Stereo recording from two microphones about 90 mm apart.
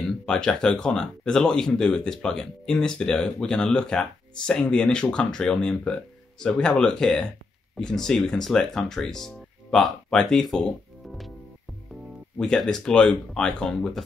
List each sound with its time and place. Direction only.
0.2 s speech: 10° left (ahead or behind)
12.4 s speech: 5° left (ahead or behind)